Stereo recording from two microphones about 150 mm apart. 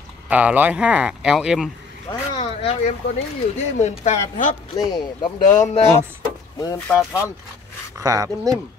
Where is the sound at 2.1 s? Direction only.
40° left (ahead or behind).